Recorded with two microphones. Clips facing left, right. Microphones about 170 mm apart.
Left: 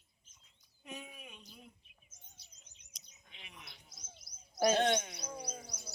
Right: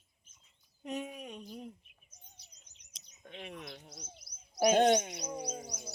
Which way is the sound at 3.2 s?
45° right (ahead or behind).